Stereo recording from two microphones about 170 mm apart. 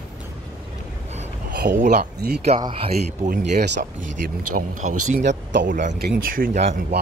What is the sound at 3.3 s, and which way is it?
Speech, 70° right (ahead or behind).